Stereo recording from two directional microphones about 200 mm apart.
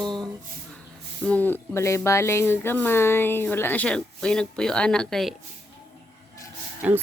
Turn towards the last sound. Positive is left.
turn(degrees=-5)  # may be behind; listen again after turning